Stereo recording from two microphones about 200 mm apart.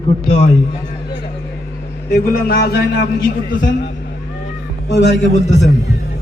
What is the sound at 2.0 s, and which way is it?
Speech, 50° left (ahead or behind).